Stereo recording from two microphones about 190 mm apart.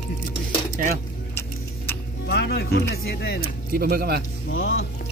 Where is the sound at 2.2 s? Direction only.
60° left (ahead or behind).